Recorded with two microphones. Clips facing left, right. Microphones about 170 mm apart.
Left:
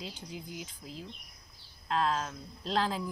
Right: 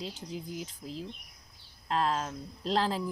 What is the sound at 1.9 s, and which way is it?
Speech, centre (ahead or behind).